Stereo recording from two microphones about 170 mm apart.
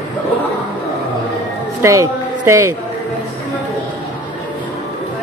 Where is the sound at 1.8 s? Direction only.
15° right (ahead or behind).